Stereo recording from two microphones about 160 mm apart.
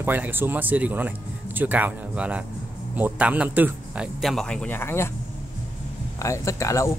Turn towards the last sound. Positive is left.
turn(degrees=20)  # may be behind; listen again after turning